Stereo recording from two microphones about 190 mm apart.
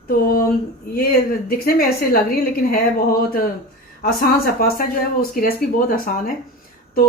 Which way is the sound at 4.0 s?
50° left (ahead or behind).